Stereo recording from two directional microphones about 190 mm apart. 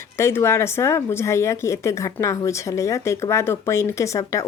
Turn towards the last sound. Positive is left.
turn(degrees=15)  # may be behind; listen again after turning